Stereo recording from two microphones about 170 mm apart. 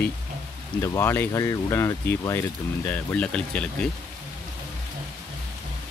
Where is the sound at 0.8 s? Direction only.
15° left (ahead or behind).